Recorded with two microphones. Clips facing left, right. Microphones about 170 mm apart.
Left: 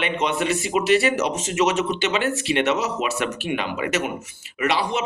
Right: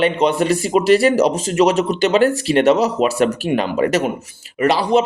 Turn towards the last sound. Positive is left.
turn(degrees=-35)  # may be behind; listen again after turning